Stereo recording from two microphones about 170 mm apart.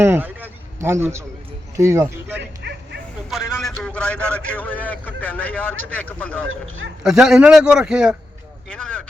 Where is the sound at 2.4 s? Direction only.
85° right.